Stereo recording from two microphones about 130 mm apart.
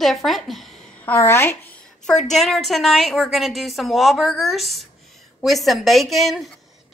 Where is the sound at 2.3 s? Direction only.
Centre (ahead or behind).